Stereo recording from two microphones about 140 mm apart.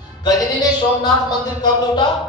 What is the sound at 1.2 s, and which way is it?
Speech, 30° left (ahead or behind).